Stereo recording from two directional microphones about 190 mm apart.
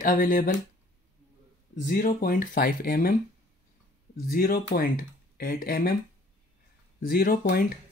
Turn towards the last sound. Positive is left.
turn(degrees=50)  # may be behind; listen again after turning